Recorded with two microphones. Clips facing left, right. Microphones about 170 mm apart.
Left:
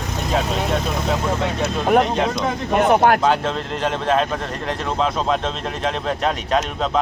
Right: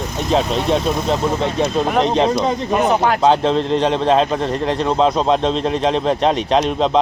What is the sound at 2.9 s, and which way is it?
Speech, 55° left (ahead or behind).